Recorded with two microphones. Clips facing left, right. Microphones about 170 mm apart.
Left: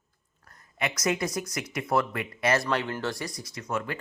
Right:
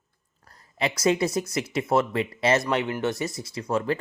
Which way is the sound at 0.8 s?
30° right (ahead or behind).